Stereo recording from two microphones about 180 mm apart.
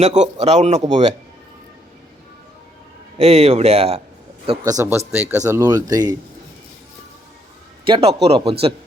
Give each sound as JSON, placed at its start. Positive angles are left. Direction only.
{"t": 0.0, "sound": "a man's voice", "side_deg": -40}
{"t": 3.2, "sound": "a man's voice", "side_deg": -35}
{"t": 4.6, "sound": "speech", "side_deg": -15}
{"t": 7.9, "sound": "a man's voice", "side_deg": -30}